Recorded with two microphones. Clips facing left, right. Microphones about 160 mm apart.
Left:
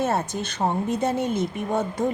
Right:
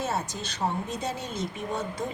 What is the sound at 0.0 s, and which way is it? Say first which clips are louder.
Speech: left 6 dB; 55° left (ahead or behind).